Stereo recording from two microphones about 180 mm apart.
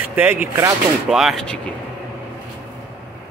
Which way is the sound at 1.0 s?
Centre (ahead or behind).